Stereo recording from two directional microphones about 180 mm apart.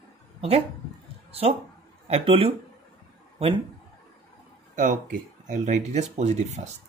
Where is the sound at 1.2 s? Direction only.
35° right (ahead or behind).